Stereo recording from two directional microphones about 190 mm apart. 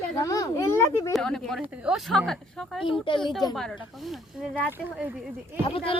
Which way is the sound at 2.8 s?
25° left (ahead or behind).